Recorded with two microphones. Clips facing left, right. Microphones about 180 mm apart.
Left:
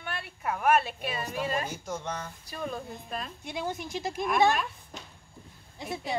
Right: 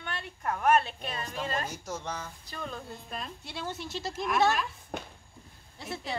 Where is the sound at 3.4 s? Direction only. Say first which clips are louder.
Left 6 dB; 15° left (ahead or behind).